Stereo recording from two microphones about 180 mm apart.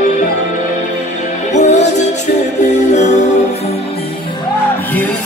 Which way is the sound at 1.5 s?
40° left (ahead or behind).